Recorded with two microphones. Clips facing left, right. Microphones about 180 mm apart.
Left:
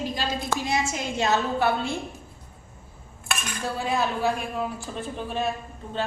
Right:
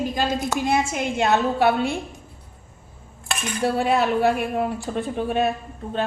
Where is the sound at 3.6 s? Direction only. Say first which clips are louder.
Right 7 dB; 65° right (ahead or behind).